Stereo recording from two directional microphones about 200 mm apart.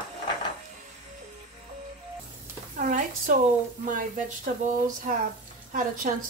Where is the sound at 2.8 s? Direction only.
40° right (ahead or behind).